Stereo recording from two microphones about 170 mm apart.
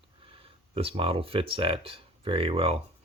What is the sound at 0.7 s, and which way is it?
Speech, 35° right (ahead or behind).